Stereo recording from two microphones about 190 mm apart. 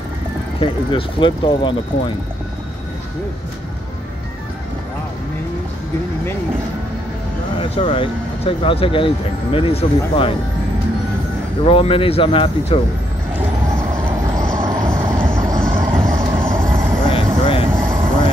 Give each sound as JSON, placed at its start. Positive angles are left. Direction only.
{"t": 0.6, "sound": "speech", "side_deg": 25}
{"t": 7.7, "sound": "speech", "side_deg": 25}
{"t": 11.6, "sound": "speech", "side_deg": 30}
{"t": 14.6, "sound": "vehicle", "side_deg": -25}
{"t": 17.1, "sound": "vehicle", "side_deg": 25}
{"t": 17.7, "sound": "vehicle", "side_deg": -10}